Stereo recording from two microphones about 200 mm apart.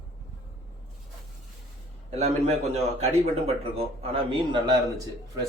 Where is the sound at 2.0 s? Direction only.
30° right (ahead or behind).